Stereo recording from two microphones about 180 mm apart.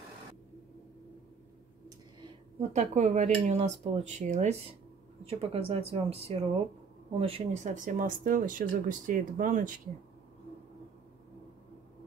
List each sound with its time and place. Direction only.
2.7 s cutlery: 40° right (ahead or behind)
7.6 s speech: 45° right (ahead or behind)